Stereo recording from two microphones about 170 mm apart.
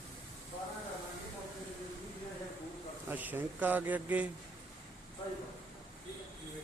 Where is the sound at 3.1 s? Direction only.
10° right (ahead or behind).